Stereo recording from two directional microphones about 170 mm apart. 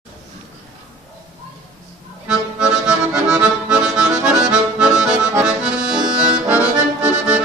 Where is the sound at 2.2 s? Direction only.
5° right (ahead or behind).